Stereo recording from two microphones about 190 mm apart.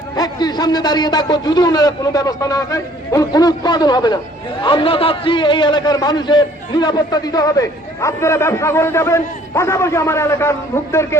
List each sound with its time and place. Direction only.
0.2 s a man's voice: 20° left (ahead or behind)